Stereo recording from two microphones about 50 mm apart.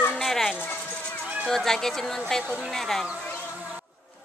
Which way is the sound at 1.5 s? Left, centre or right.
Centre.